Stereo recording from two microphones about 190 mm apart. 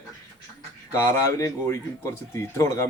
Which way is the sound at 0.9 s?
15° left (ahead or behind).